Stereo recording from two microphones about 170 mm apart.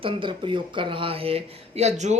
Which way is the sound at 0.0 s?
30° right (ahead or behind).